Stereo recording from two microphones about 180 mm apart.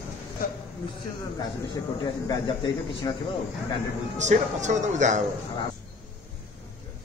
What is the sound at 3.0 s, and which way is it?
Speech, 20° left (ahead or behind).